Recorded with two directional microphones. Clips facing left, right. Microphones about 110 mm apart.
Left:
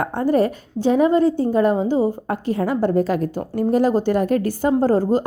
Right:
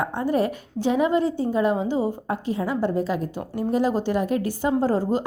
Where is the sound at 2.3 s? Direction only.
55° left (ahead or behind).